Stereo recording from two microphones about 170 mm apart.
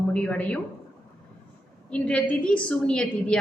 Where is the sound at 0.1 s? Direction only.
5° left (ahead or behind).